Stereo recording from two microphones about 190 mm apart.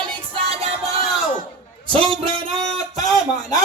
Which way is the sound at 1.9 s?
30° right (ahead or behind).